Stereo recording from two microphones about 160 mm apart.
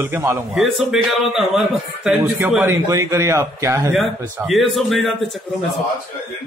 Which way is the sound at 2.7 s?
20° right (ahead or behind).